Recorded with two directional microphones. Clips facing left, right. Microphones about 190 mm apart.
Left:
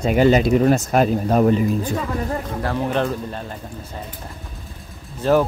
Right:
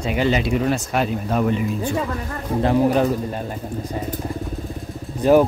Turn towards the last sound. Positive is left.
turn(degrees=-15)  # may be behind; listen again after turning